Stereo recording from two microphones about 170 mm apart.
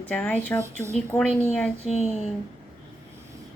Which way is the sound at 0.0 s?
10° left (ahead or behind).